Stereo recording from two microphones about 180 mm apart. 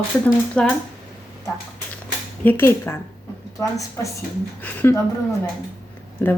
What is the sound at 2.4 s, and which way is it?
A woman's voice, 10° left (ahead or behind).